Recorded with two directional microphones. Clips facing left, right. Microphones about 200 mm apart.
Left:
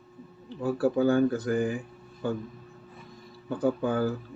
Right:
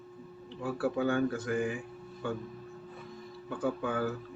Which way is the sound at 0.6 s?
35° left (ahead or behind).